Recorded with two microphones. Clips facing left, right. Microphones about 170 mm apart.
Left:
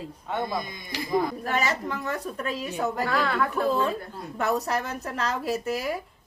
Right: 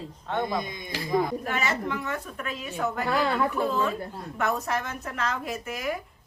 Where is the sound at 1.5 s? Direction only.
35° left (ahead or behind).